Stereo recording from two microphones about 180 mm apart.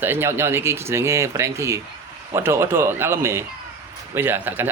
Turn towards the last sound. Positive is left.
turn(degrees=-10)  # may be behind; listen again after turning